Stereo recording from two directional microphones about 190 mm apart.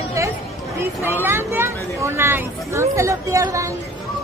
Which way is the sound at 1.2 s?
10° right (ahead or behind).